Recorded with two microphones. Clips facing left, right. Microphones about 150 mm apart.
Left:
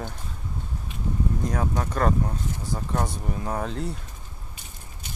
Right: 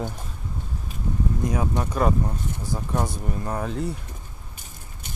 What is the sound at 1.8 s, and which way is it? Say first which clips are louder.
Speech: even; 5° right (ahead or behind).